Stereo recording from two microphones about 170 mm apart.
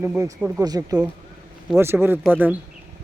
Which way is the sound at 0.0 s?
15° right (ahead or behind).